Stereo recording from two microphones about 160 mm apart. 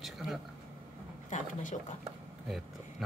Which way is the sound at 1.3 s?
50° left (ahead or behind).